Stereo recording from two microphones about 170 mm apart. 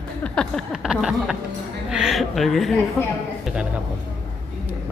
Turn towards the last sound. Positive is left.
turn(degrees=-5)  # may be behind; listen again after turning